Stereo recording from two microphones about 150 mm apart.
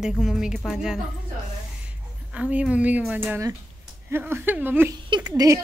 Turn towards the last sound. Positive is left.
turn(degrees=-25)  # may be behind; listen again after turning